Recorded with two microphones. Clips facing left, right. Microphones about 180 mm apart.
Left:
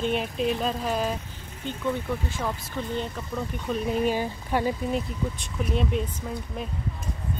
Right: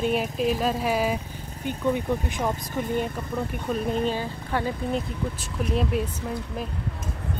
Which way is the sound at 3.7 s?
5° left (ahead or behind).